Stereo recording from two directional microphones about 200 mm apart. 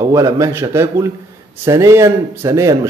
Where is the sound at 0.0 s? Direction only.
15° right (ahead or behind).